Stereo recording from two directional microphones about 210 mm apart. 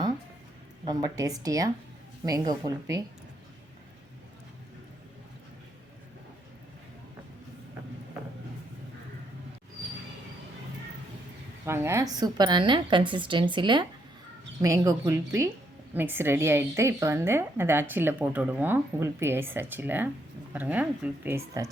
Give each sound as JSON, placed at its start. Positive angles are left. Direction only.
{"t": 0.9, "sound": "a woman's voice", "side_deg": -20}
{"t": 11.6, "sound": "a woman's voice", "side_deg": -10}